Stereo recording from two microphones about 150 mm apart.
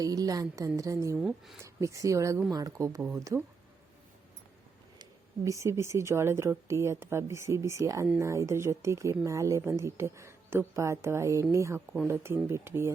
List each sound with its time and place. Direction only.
0.0 s speech: 25° right (ahead or behind)
1.2 s speech: centre (ahead or behind)
1.6 s speech: 20° right (ahead or behind)
5.5 s speech: 20° right (ahead or behind)